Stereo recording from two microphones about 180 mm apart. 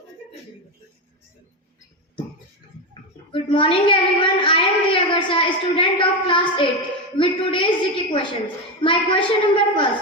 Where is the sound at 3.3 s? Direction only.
30° left (ahead or behind).